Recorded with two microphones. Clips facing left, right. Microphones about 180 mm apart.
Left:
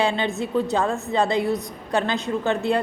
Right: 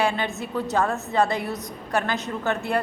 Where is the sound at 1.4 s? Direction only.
30° left (ahead or behind).